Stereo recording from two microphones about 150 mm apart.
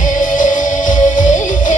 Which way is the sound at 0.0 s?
60° left (ahead or behind).